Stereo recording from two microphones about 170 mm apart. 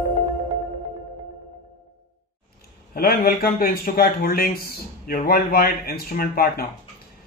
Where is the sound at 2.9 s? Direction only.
60° left (ahead or behind).